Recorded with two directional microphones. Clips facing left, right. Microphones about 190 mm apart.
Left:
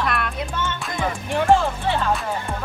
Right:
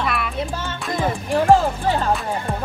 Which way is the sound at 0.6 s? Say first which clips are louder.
Right 1 dB; 35° right (ahead or behind).